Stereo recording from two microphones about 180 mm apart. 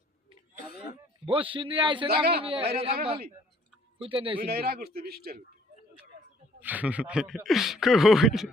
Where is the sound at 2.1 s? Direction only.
60° right (ahead or behind).